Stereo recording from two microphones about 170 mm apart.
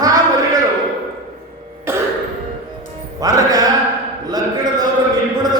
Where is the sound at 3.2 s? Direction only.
20° right (ahead or behind).